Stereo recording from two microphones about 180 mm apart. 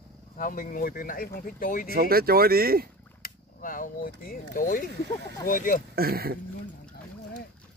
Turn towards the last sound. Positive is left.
turn(degrees=-60)  # may be behind; listen again after turning